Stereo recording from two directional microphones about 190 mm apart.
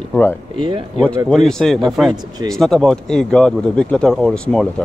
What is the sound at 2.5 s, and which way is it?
Speech, centre (ahead or behind).